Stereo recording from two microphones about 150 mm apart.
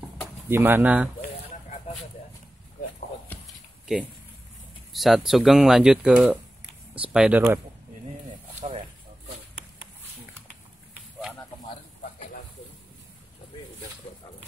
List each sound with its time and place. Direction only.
0.5 s speech: 15° right (ahead or behind)
3.8 s speech: 5° right (ahead or behind)
8.5 s snake: 40° right (ahead or behind)